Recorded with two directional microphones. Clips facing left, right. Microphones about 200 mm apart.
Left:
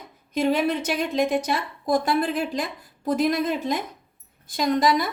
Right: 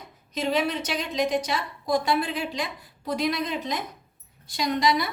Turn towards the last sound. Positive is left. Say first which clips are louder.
# left 3 dB
turn(degrees=45)  # may be behind; listen again after turning